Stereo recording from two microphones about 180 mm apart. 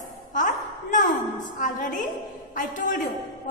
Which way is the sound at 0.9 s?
45° left (ahead or behind).